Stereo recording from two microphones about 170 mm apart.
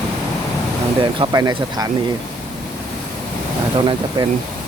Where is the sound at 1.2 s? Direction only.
25° right (ahead or behind).